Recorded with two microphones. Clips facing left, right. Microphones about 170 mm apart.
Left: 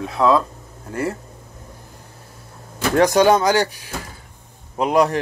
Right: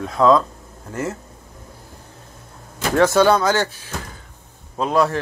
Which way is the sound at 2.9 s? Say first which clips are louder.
Even; 15° left (ahead or behind).